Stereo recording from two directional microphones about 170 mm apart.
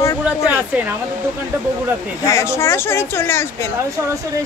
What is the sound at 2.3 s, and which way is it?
Speech, 15° left (ahead or behind).